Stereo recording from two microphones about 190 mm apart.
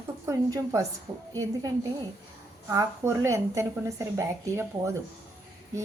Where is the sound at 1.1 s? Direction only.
30° right (ahead or behind).